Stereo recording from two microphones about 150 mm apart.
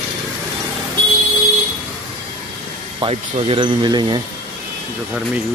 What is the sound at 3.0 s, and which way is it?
Speech, 40° right (ahead or behind).